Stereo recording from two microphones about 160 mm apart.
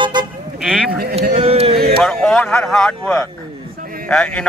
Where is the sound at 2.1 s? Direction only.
5° left (ahead or behind).